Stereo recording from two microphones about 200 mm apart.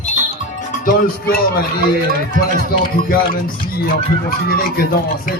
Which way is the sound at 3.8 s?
45° left (ahead or behind).